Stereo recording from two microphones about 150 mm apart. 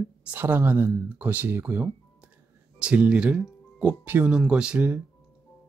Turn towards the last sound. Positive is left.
turn(degrees=-10)  # may be behind; listen again after turning